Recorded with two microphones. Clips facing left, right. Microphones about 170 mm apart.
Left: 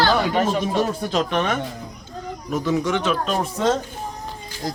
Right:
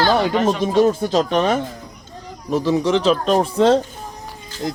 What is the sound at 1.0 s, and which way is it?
Speech, 30° right (ahead or behind).